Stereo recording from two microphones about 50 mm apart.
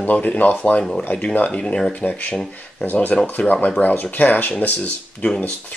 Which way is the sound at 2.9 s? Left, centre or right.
Left.